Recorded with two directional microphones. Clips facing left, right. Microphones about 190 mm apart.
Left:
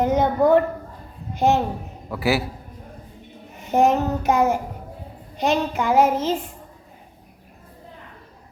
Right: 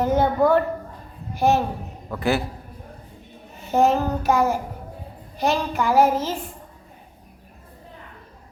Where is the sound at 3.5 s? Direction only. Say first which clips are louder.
Left 1 dB; 15° left (ahead or behind).